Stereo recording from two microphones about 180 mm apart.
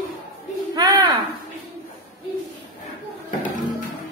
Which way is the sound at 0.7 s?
20° right (ahead or behind).